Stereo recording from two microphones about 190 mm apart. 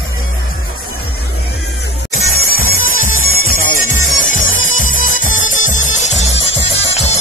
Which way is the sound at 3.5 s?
45° left (ahead or behind).